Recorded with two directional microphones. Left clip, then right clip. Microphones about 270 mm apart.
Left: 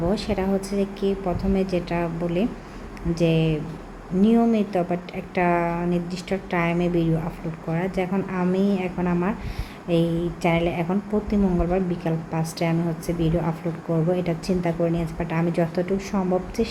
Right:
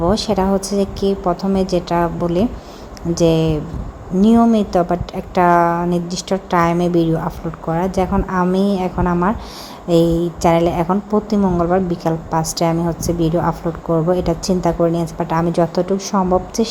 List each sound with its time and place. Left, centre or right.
0.0 s a woman's voice: right